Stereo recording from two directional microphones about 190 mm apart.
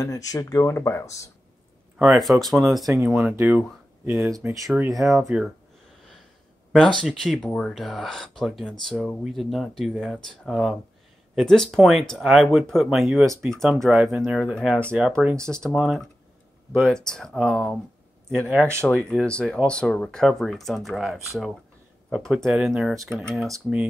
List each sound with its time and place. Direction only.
0.0 s speech: 20° left (ahead or behind)
2.0 s speech: centre (ahead or behind)
6.7 s speech: 5° left (ahead or behind)